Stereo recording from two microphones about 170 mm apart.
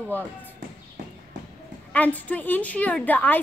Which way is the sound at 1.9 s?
10° left (ahead or behind).